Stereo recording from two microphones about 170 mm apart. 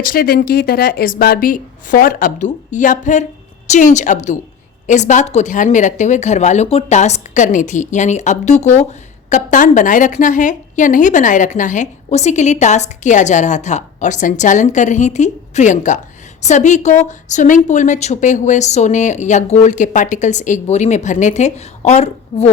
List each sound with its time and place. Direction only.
0.0 s speech: 60° left (ahead or behind); by 22.4 s 40° left (ahead or behind)